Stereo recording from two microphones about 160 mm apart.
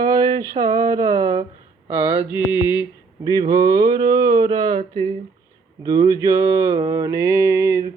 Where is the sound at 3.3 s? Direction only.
25° right (ahead or behind).